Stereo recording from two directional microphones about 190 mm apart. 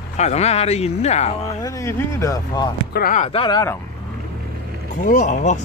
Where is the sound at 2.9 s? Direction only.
50° left (ahead or behind).